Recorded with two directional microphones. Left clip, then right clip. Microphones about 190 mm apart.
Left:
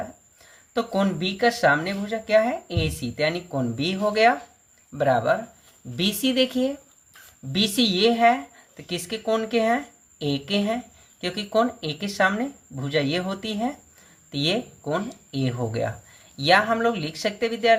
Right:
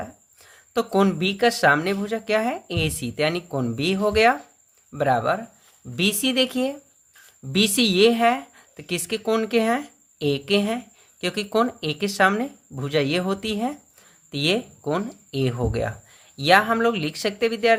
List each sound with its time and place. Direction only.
0.4 s a woman's voice: 30° right (ahead or behind)